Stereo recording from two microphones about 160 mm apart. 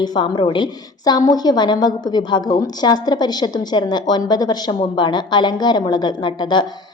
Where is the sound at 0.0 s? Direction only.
25° left (ahead or behind).